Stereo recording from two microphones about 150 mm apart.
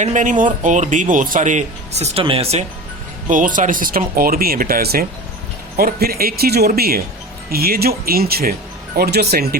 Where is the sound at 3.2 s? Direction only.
60° right (ahead or behind).